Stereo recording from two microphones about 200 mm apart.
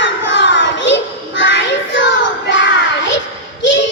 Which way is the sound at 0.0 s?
65° left (ahead or behind).